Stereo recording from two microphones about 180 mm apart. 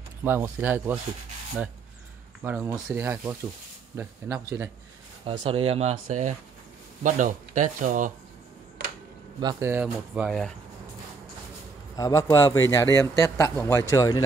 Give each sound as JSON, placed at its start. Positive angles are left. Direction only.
{"t": 0.2, "sound": "speech", "side_deg": -10}
{"t": 2.4, "sound": "speech", "side_deg": -10}
{"t": 5.2, "sound": "speech", "side_deg": -30}
{"t": 9.4, "sound": "speech", "side_deg": -25}
{"t": 9.7, "sound": "speech", "side_deg": -10}
{"t": 12.0, "sound": "a man's voice", "side_deg": 20}